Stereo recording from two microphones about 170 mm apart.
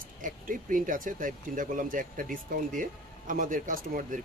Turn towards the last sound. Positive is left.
turn(degrees=-50)  # may be behind; listen again after turning